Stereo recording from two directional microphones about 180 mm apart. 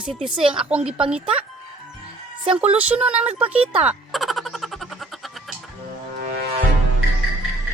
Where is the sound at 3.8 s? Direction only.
Centre (ahead or behind).